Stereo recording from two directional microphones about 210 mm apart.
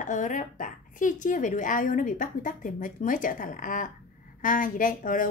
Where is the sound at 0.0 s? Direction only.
35° left (ahead or behind).